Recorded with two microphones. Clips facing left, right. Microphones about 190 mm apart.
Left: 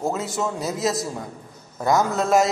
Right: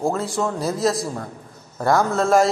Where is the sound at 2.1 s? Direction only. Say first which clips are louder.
Right 2 dB; centre (ahead or behind).